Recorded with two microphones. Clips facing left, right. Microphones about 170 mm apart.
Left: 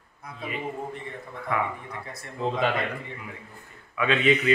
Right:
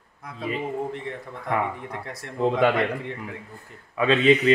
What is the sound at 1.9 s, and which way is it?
Speech, 80° right.